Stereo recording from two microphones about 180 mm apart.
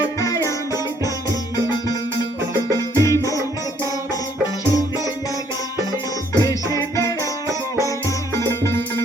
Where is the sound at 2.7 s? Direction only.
15° left (ahead or behind).